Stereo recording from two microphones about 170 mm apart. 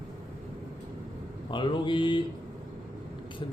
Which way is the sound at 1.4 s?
30° left (ahead or behind).